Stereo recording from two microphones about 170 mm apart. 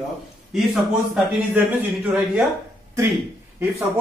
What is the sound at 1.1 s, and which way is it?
Speech, 10° right (ahead or behind).